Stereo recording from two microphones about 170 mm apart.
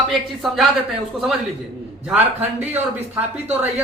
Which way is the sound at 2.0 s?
10° right (ahead or behind).